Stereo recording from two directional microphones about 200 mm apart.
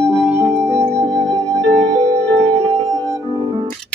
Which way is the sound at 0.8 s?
25° right (ahead or behind).